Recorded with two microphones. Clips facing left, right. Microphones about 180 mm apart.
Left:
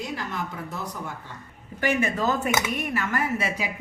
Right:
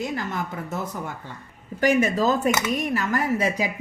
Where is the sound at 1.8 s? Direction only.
40° right (ahead or behind).